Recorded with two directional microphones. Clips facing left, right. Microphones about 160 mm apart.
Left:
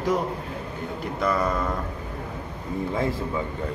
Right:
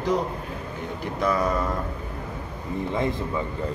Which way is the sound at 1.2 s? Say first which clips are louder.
Right 1 dB; centre (ahead or behind).